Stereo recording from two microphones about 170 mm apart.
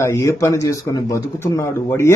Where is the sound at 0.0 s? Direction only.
15° left (ahead or behind).